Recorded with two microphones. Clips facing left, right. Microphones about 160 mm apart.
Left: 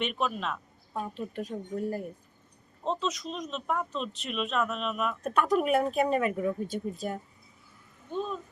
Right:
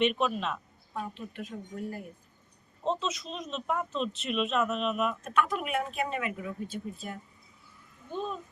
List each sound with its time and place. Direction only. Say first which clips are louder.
0.0 s speech: right 3 dB; centre (ahead or behind)
0.9 s speech: left 3 dB; 35° left (ahead or behind)
2.8 s speech: even; centre (ahead or behind)
5.2 s speech: left 4 dB; 40° left (ahead or behind)